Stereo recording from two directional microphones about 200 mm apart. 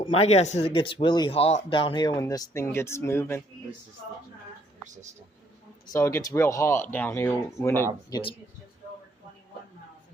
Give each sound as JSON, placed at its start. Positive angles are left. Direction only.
{"t": 0.0, "sound": "speech", "side_deg": 30}
{"t": 5.8, "sound": "speech", "side_deg": 15}
{"t": 8.1, "sound": "speech", "side_deg": 25}